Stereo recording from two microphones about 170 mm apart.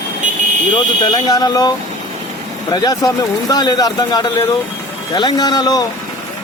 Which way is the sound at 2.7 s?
25° left (ahead or behind).